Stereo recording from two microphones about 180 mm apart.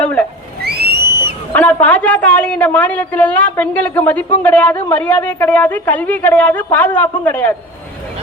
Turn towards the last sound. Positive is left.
turn(degrees=10)  # may be behind; listen again after turning